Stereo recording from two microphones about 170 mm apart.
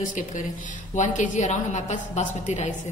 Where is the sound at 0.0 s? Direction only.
50° left (ahead or behind).